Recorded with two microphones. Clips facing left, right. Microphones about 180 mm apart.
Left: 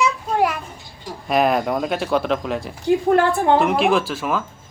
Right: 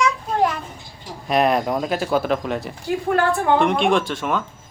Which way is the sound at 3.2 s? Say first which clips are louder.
Left 2 dB; 25° left (ahead or behind).